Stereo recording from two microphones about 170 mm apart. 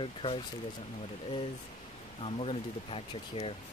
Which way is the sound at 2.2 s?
35° left (ahead or behind).